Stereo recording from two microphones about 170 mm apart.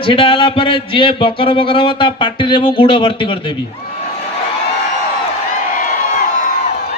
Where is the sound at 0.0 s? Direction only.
30° left (ahead or behind).